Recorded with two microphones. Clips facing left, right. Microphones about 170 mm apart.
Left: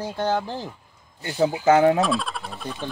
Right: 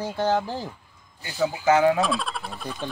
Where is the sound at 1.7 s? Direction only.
35° left (ahead or behind).